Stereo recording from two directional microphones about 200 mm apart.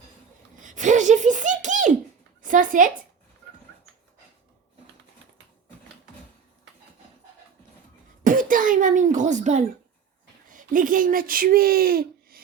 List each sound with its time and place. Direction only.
0.6 s a sound: 40° right (ahead or behind)
8.2 s cough: 40° right (ahead or behind)
10.5 s speech: 40° right (ahead or behind)